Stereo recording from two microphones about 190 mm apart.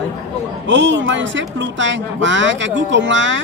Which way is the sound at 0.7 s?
75° right (ahead or behind).